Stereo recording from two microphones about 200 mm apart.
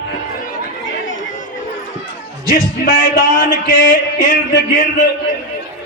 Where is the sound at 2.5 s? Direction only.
50° left (ahead or behind).